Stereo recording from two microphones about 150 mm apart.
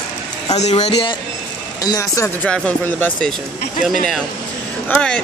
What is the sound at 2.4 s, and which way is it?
Speech, 5° left (ahead or behind).